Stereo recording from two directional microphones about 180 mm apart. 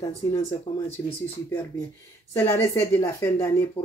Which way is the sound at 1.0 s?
15° left (ahead or behind).